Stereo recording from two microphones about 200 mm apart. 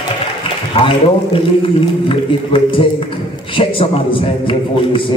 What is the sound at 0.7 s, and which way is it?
A man's voice, 25° left (ahead or behind).